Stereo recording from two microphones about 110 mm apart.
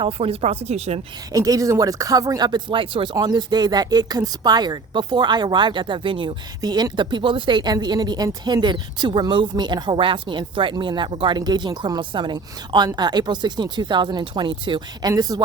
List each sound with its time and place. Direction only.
0.0 s speech: 60° right (ahead or behind); by 1.0 s 75° right (ahead or behind)
1.3 s speech: 30° right (ahead or behind); by 6.3 s 50° right (ahead or behind)
6.6 s a woman's voice: 35° right (ahead or behind)
15.1 s speech: 35° right (ahead or behind)